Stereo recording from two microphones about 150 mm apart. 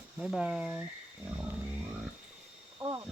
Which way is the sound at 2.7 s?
30° right (ahead or behind).